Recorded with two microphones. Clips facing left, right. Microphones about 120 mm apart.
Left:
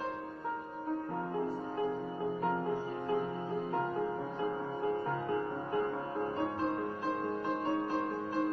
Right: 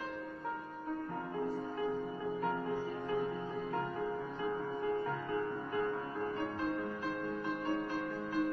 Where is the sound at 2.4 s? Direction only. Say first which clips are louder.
Left 2 dB; 30° left (ahead or behind).